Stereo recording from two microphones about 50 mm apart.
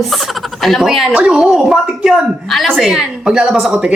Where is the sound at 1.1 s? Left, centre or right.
Centre.